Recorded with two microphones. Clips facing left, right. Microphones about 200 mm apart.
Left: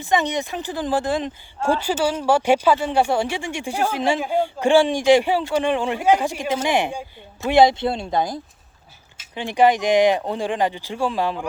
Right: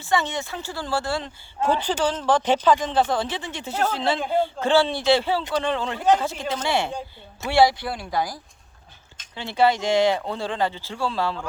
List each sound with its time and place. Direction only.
0.0 s speech: 15° left (ahead or behind)